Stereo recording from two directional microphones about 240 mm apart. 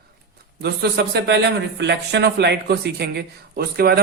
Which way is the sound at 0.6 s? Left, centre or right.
Right.